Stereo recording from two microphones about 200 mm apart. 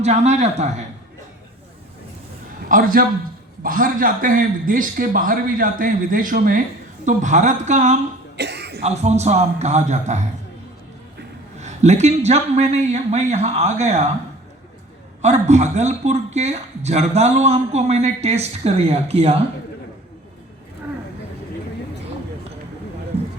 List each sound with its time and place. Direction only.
0.0 s a man's voice: 35° right (ahead or behind)
2.6 s a man's voice: 45° right (ahead or behind)
8.4 s cough: 55° right (ahead or behind)
8.8 s a man's voice: 35° right (ahead or behind)
11.6 s a man's voice: 35° right (ahead or behind)
15.2 s a man's voice: 35° right (ahead or behind)